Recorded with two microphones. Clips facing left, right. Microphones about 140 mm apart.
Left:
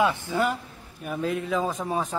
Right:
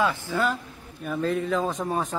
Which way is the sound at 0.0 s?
20° left (ahead or behind).